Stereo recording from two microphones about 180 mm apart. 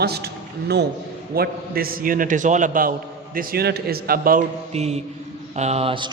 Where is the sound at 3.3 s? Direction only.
60° right (ahead or behind).